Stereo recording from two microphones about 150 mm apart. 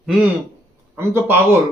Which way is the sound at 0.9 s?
15° right (ahead or behind).